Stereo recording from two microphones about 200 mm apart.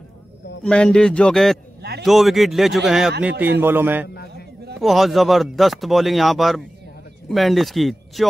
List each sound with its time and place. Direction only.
0.7 s speech: 5° left (ahead or behind)
1.8 s a man's voice: 55° right (ahead or behind)
2.0 s a man's voice: centre (ahead or behind)
4.1 s a sound: 50° left (ahead or behind)
4.7 s speech: centre (ahead or behind)